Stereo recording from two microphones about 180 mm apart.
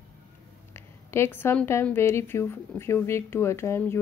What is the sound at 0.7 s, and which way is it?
A woman's voice, 15° left (ahead or behind).